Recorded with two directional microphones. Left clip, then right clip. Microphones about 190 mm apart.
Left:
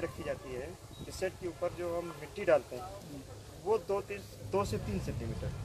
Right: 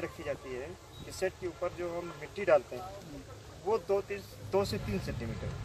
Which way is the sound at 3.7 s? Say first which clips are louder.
Right 2 dB; 15° left (ahead or behind).